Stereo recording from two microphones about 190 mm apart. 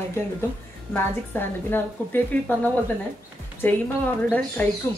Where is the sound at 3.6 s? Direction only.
10° left (ahead or behind).